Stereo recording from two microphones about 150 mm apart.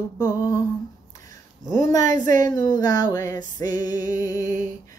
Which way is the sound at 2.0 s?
60° right (ahead or behind).